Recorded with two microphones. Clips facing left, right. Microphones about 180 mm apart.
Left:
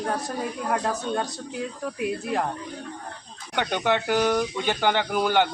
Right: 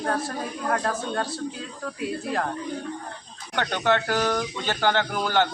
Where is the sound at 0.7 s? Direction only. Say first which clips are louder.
Even; 15° left (ahead or behind).